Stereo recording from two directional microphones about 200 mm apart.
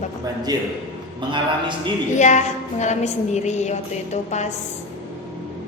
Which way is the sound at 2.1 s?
35° left (ahead or behind).